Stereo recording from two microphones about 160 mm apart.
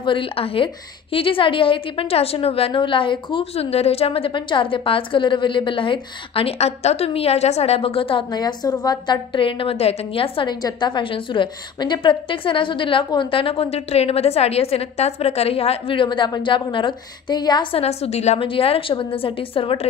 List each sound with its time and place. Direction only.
0.0 s a woman's voice: 30° left (ahead or behind)